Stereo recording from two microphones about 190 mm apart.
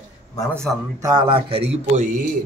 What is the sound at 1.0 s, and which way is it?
Speech, 25° right (ahead or behind).